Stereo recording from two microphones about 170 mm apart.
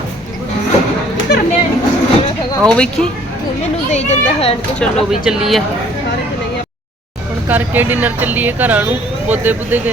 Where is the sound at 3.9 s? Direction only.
40° left (ahead or behind).